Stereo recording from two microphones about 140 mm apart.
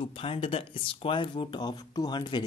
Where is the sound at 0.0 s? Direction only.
40° left (ahead or behind).